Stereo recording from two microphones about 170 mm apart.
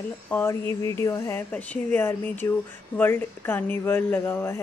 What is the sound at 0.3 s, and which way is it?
A woman's voice, 10° left (ahead or behind).